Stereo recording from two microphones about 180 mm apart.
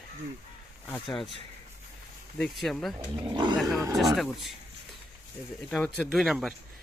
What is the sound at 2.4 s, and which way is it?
Speech, centre (ahead or behind).